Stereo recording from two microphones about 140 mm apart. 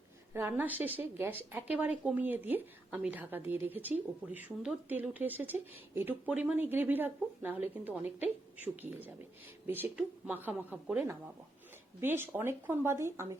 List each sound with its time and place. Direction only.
0.3 s a woman's voice: 15° right (ahead or behind)